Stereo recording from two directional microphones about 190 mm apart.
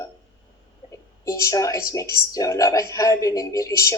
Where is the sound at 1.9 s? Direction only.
15° left (ahead or behind).